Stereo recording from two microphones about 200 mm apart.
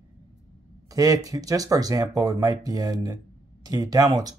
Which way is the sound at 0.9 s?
15° right (ahead or behind).